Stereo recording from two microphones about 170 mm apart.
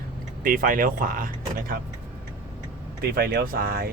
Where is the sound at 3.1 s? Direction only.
65° right (ahead or behind).